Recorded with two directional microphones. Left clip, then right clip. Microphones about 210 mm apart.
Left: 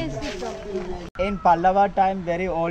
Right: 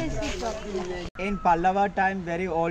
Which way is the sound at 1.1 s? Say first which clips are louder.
Left 5 dB; 5° left (ahead or behind).